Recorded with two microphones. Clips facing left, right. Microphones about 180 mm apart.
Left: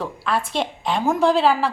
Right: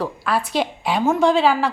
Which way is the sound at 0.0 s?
5° right (ahead or behind).